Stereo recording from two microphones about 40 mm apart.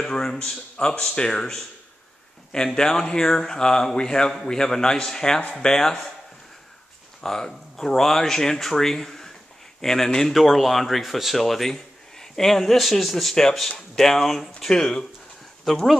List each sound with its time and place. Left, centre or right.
0.0 s speech: centre
7.2 s speech: centre
10.3 s speech: centre